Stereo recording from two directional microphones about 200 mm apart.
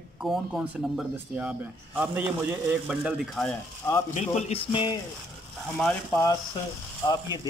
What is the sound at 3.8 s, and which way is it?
Speech, 15° left (ahead or behind).